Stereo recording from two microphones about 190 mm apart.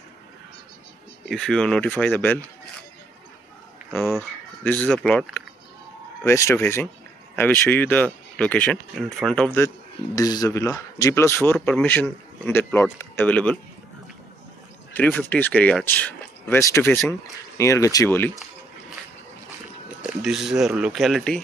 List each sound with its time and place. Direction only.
1.3 s speech: 5° left (ahead or behind)
3.9 s speech: 10° left (ahead or behind)
10.1 s speech: 20° left (ahead or behind)
15.0 s speech: 10° left (ahead or behind)
20.0 s speech: centre (ahead or behind)